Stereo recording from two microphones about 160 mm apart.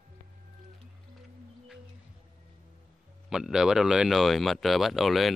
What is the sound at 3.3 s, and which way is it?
Speech, 5° right (ahead or behind).